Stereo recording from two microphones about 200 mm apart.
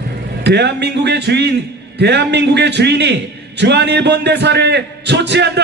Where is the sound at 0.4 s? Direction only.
55° right (ahead or behind).